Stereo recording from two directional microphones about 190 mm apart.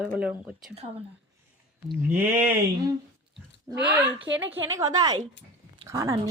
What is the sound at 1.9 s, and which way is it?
Speech, 10° right (ahead or behind).